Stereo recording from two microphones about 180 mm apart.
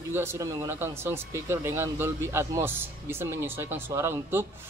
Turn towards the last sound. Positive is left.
turn(degrees=-15)  # may be behind; listen again after turning